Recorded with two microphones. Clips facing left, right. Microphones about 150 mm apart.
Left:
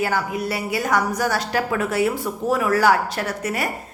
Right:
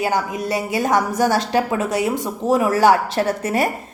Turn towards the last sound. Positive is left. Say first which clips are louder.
# right 5 dB
turn(degrees=-25)  # may be behind; listen again after turning